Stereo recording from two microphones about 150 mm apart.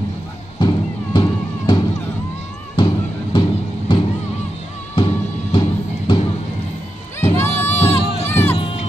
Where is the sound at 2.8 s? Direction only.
30° left (ahead or behind).